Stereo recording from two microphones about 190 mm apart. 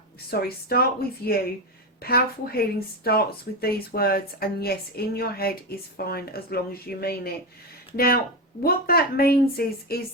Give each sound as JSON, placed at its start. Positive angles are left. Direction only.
{"t": 0.3, "sound": "a woman's voice", "side_deg": 55}